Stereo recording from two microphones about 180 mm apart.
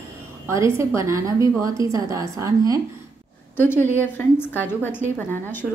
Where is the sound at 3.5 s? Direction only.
10° left (ahead or behind).